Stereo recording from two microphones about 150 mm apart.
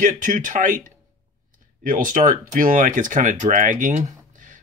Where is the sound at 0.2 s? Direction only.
60° right (ahead or behind).